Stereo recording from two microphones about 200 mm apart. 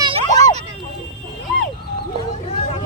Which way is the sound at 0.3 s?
20° left (ahead or behind).